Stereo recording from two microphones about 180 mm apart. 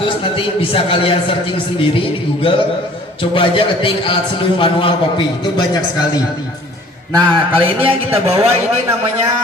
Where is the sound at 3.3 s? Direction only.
30° left (ahead or behind).